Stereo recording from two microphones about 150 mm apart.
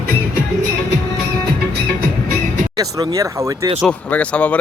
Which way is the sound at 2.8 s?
25° right (ahead or behind).